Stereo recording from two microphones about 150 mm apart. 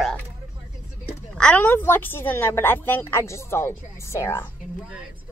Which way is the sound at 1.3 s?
10° left (ahead or behind).